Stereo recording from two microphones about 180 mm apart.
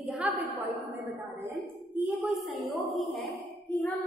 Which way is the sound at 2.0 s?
Centre (ahead or behind).